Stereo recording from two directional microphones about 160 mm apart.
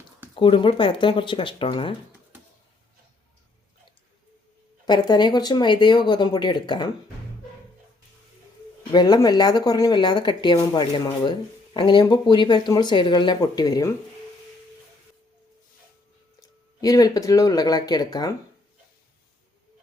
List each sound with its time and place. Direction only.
0.3 s speech: 30° left (ahead or behind)
4.9 s speech: 25° left (ahead or behind)
8.9 s speech: 25° left (ahead or behind)
16.4 s speech: 20° left (ahead or behind)